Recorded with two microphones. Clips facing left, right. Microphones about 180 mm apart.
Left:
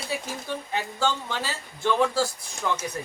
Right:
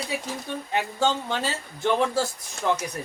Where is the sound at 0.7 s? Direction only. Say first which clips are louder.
Right 3 dB; 20° right (ahead or behind).